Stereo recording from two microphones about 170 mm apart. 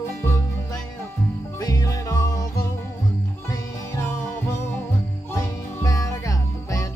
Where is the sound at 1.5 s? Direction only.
20° left (ahead or behind).